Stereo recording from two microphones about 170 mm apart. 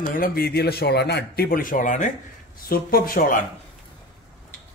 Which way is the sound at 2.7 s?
60° left (ahead or behind).